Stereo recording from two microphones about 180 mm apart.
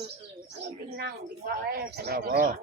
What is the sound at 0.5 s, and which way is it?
Speech, 65° right (ahead or behind).